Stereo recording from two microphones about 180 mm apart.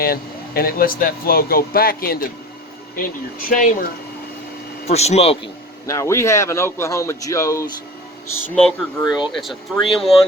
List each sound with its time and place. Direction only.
0.0 s speech: 60° left (ahead or behind)
3.5 s speech: 45° left (ahead or behind)
4.9 s speech: 35° left (ahead or behind)
5.8 s speech: 15° left (ahead or behind)
8.5 s speech: 5° left (ahead or behind)